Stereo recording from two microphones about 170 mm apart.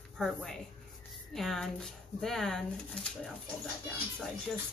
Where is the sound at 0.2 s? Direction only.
Centre (ahead or behind).